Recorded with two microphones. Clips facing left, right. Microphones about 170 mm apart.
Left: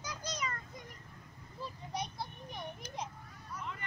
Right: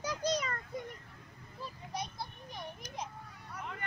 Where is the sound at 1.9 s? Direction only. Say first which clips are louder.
Even; 10° right (ahead or behind).